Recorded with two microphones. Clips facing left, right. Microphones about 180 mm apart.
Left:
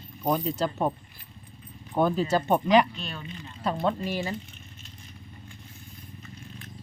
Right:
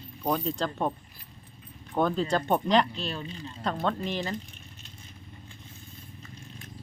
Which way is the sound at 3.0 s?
30° right (ahead or behind).